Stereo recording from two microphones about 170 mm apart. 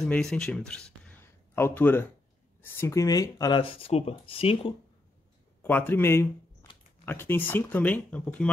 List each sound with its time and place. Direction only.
0.0 s speech: 5° left (ahead or behind); by 4.7 s 35° left (ahead or behind)
5.6 s speech: 10° left (ahead or behind)